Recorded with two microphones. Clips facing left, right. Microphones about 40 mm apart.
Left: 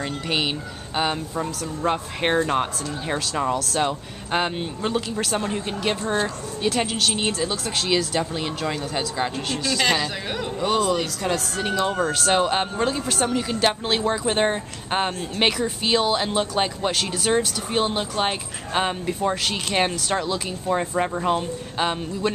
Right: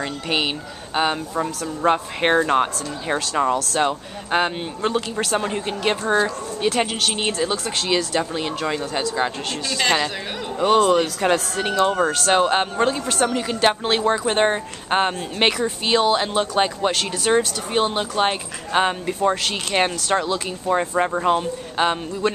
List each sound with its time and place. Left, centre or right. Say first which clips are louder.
0.0 s speech: right 2 dB; centre
3.5 s speech: right 2 dB; centre
3.8 s speech: right 3 dB; centre
10.6 s speech: right 6 dB; centre
12.1 s speech: right 3 dB; centre